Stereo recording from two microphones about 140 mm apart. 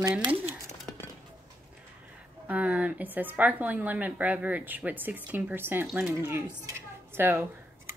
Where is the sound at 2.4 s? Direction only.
10° right (ahead or behind).